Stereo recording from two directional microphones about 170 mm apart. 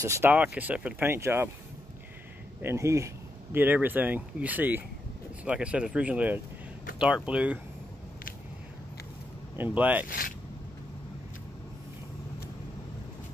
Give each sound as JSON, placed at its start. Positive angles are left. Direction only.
{"t": 0.0, "sound": "speech", "side_deg": -15}
{"t": 2.6, "sound": "speech", "side_deg": -15}
{"t": 9.6, "sound": "speech", "side_deg": -10}
{"t": 10.0, "sound": "speech", "side_deg": 55}